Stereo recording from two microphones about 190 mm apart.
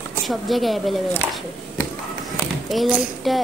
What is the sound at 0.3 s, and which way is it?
Speech, centre (ahead or behind).